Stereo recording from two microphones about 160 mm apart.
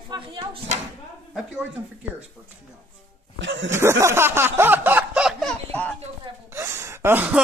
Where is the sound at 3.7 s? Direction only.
15° right (ahead or behind).